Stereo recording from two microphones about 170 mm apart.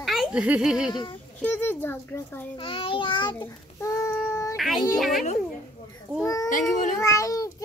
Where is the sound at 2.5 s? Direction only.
30° left (ahead or behind).